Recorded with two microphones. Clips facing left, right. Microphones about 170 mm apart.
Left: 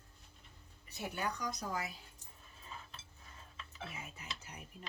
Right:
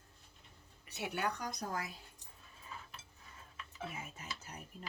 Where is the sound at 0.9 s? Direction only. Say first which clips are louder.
Right 2 dB; 75° right (ahead or behind); by 1.8 s 55° right (ahead or behind).